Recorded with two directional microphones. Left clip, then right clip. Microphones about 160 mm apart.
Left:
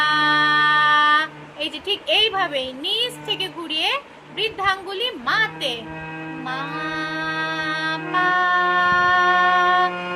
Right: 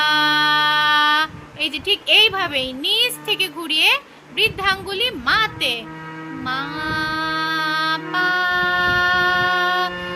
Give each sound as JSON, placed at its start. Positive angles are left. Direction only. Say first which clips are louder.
{"t": 0.0, "sound": "speech", "louder": "right 1 dB", "side_deg": -50}
{"t": 6.4, "sound": "music", "louder": "right 3 dB", "side_deg": -50}